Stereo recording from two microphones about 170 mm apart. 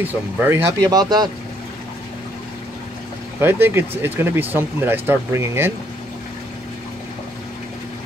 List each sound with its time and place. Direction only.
0.0 s speech: 10° right (ahead or behind)
3.3 s speech: 15° right (ahead or behind)